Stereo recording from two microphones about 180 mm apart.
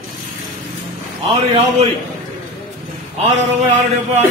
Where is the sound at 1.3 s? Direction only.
35° right (ahead or behind).